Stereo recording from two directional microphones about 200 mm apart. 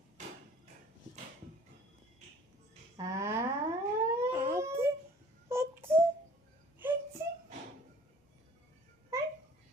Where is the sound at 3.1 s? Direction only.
15° right (ahead or behind).